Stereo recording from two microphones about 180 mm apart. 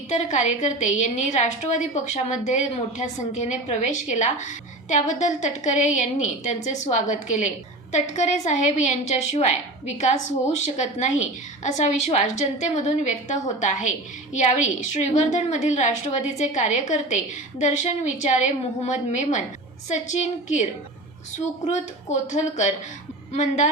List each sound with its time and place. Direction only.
0.1 s a woman's voice: 40° left (ahead or behind)
21.7 s a woman's voice: 40° left (ahead or behind)